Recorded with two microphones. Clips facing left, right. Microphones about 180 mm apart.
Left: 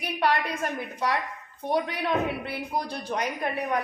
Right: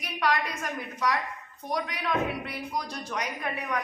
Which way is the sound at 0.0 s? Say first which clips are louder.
Left 2 dB; 30° left (ahead or behind).